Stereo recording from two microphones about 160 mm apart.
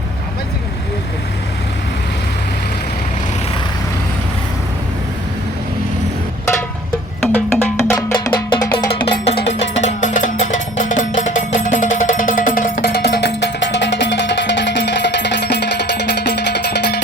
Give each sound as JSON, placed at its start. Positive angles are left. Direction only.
{"t": 7.3, "sound": "music", "side_deg": 10}
{"t": 7.9, "sound": "music", "side_deg": 25}
{"t": 9.5, "sound": "music", "side_deg": 45}
{"t": 12.9, "sound": "music", "side_deg": 90}